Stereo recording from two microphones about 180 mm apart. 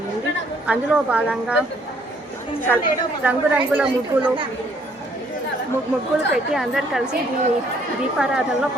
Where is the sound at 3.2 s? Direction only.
10° right (ahead or behind).